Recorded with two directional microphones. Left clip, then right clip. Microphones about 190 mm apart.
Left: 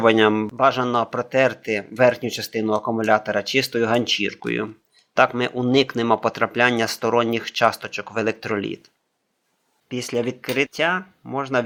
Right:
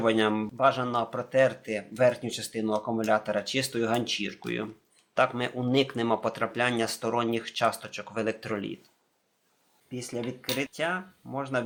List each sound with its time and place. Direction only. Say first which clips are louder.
0.0 s speech: left 9 dB; 40° left (ahead or behind)
9.9 s speech: left 11 dB; 50° left (ahead or behind)